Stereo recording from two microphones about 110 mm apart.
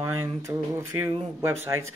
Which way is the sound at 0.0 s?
25° right (ahead or behind).